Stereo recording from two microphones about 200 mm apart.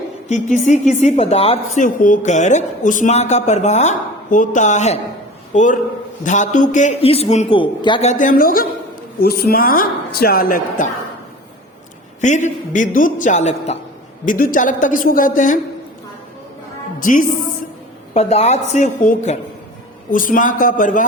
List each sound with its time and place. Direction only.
0.3 s a woman's voice: 35° left (ahead or behind)
8.2 s a woman's voice: 45° left (ahead or behind)
12.2 s a woman's voice: 35° left (ahead or behind)
17.0 s a woman's voice: 40° left (ahead or behind)
18.1 s a woman's voice: 30° left (ahead or behind)